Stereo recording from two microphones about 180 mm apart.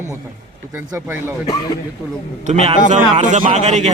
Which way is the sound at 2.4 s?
40° right (ahead or behind).